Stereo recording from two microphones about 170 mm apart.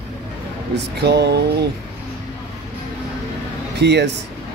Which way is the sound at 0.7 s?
75° right (ahead or behind).